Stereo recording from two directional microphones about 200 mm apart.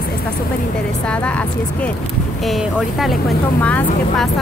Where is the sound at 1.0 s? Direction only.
5° left (ahead or behind).